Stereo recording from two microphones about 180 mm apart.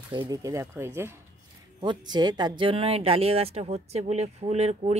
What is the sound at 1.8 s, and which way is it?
Speech, 25° right (ahead or behind).